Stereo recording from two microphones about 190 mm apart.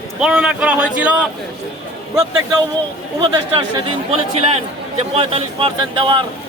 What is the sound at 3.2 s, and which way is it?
Speech, 20° right (ahead or behind).